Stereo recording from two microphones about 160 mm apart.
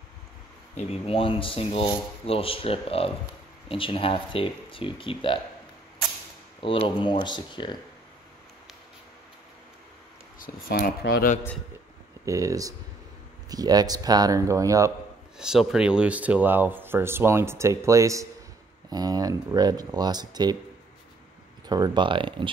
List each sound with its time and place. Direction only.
0.7 s speech: 35° left (ahead or behind)
6.6 s speech: 35° left (ahead or behind)
10.4 s speech: 75° left (ahead or behind)
12.3 s speech: 20° right (ahead or behind)
15.3 s speech: 5° right (ahead or behind); by 20.5 s 25° right (ahead or behind)
21.6 s speech: 25° right (ahead or behind)